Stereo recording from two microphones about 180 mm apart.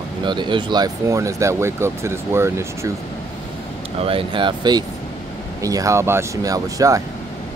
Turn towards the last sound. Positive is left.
turn(degrees=-20)  # may be behind; listen again after turning